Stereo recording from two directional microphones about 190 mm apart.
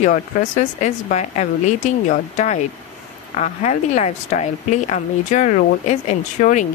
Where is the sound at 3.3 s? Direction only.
40° left (ahead or behind).